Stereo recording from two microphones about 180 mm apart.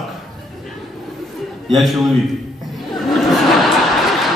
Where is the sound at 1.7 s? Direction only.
Centre (ahead or behind).